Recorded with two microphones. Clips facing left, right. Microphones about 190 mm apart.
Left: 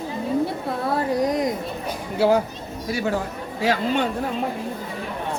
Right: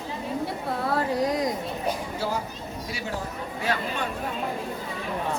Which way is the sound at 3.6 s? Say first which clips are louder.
Left 8 dB; 90° left.